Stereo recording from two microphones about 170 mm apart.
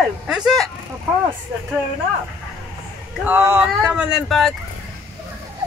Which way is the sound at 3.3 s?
15° right (ahead or behind).